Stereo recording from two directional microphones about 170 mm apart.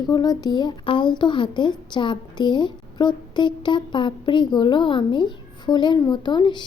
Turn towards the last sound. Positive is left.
turn(degrees=25)  # may be behind; listen again after turning